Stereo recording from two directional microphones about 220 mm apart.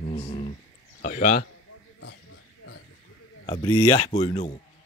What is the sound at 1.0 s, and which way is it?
Speech, 40° left (ahead or behind).